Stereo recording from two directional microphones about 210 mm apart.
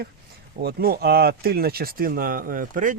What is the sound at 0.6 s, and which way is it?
Speech, 45° right (ahead or behind).